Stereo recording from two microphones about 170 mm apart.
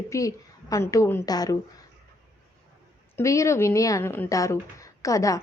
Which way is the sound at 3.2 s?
15° left (ahead or behind).